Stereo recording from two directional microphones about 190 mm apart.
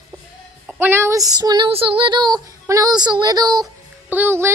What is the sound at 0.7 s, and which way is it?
Female singing, 10° right (ahead or behind).